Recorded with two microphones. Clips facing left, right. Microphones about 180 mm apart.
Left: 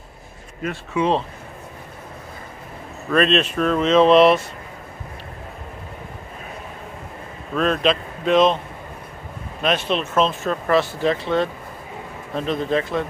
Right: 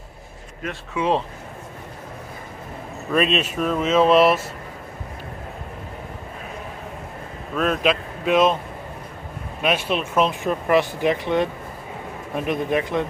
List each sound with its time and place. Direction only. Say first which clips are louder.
0.9 s speech: left 1 dB; 10° right (ahead or behind)
3.1 s speech: left 3 dB; 10° right (ahead or behind)
7.5 s speech: left 1 dB; 5° right (ahead or behind)
9.6 s speech: left 1 dB; 10° right (ahead or behind)